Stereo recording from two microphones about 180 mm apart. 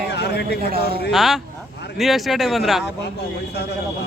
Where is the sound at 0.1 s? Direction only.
70° left (ahead or behind).